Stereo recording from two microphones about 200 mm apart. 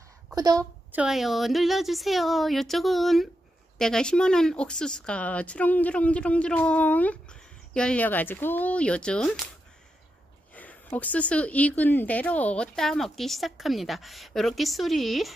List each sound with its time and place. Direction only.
0.3 s a woman's voice: 15° right (ahead or behind)
0.9 s speech: centre (ahead or behind)
10.5 s speech: 10° left (ahead or behind)